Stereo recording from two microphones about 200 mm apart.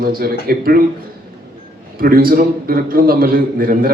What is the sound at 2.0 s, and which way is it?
A man's voice, 45° right (ahead or behind).